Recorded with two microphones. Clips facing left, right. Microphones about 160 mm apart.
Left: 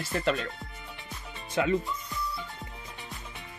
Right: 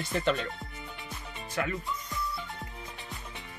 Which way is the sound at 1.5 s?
20° left (ahead or behind).